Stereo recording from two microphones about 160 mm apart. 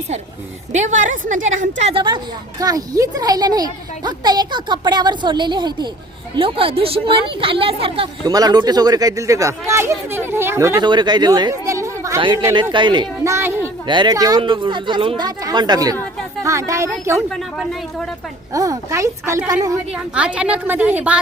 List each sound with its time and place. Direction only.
0.7 s a woman's voice: 50° right (ahead or behind)
1.9 s a woman's voice: 30° right (ahead or behind)
10.8 s a woman's voice: 30° right (ahead or behind)
13.3 s a woman's voice: 15° right (ahead or behind)
13.8 s a woman's voice: 30° right (ahead or behind)
17.2 s speech: centre (ahead or behind)
18.5 s a woman's voice: 20° right (ahead or behind)
20.1 s a woman's voice: 5° right (ahead or behind)